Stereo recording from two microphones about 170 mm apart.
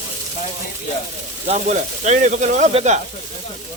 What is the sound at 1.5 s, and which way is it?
Speech, 45° right (ahead or behind).